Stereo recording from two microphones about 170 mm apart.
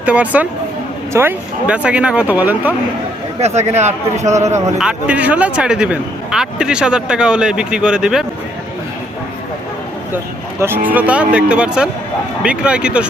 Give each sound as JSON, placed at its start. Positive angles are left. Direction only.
{"t": 0.0, "sound": "speech", "side_deg": -10}
{"t": 3.4, "sound": "speech", "side_deg": -40}
{"t": 4.8, "sound": "a man's voice", "side_deg": -5}
{"t": 10.6, "sound": "a man's voice", "side_deg": -10}